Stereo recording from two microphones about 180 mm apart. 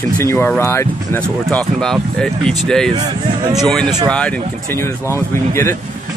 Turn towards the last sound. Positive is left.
turn(degrees=15)  # may be behind; listen again after turning